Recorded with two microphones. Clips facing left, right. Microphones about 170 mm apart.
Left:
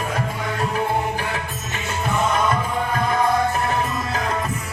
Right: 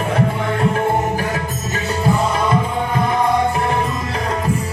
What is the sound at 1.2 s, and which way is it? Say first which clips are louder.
Music: right 5 dB; 40° right (ahead or behind).